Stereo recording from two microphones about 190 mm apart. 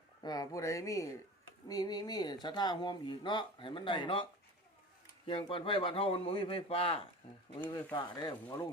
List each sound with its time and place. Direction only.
0.2 s speech: 20° left (ahead or behind)